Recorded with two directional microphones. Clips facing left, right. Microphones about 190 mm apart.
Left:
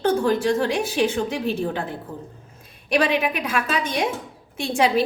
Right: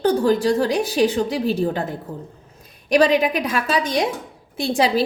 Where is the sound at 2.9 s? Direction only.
40° right (ahead or behind).